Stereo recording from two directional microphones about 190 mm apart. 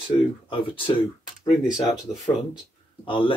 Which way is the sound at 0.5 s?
25° left (ahead or behind).